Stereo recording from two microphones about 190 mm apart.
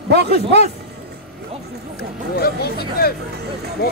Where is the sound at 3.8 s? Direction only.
55° left (ahead or behind).